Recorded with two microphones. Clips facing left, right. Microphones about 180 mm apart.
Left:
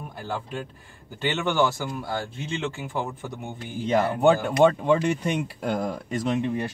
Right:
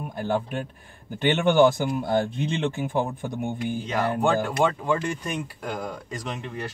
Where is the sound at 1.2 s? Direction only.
15° right (ahead or behind).